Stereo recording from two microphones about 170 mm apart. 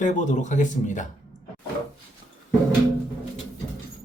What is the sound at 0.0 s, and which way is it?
Speech, 45° left (ahead or behind).